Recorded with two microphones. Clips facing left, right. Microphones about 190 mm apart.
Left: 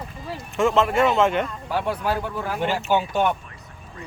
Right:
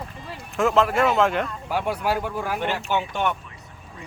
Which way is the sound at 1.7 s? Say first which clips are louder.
Even; 10° right (ahead or behind).